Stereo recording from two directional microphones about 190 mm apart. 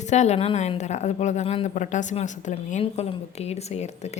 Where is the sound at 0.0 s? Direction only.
35° left (ahead or behind).